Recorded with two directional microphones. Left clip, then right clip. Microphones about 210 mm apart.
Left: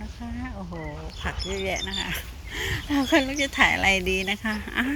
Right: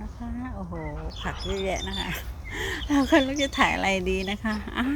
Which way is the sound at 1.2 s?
Centre (ahead or behind).